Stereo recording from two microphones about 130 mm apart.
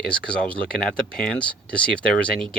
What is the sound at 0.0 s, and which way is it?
Speech, 10° left (ahead or behind).